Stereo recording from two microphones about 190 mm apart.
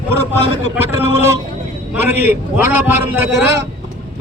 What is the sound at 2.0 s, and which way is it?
A man's voice, 10° right (ahead or behind).